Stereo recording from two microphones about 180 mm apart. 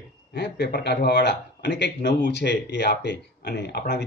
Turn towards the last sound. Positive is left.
turn(degrees=65)  # may be behind; listen again after turning